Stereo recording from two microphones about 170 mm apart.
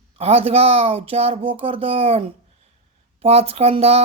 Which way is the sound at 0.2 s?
35° right (ahead or behind).